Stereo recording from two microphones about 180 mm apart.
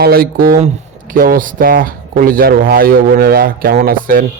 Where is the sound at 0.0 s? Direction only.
55° right (ahead or behind).